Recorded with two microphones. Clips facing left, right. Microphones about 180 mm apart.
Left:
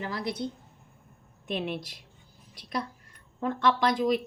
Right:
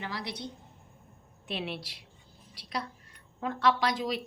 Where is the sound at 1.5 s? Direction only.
45° left (ahead or behind).